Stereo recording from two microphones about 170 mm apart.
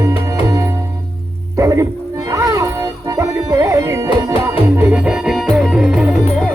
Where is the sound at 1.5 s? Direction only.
15° right (ahead or behind).